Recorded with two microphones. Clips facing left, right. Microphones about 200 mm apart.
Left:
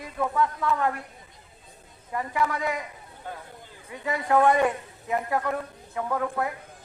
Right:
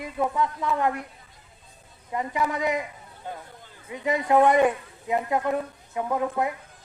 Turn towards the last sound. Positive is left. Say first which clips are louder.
# right 2 dB
turn(degrees=-20)  # may be behind; listen again after turning